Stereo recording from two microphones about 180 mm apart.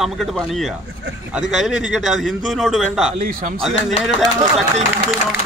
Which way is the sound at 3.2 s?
55° right (ahead or behind).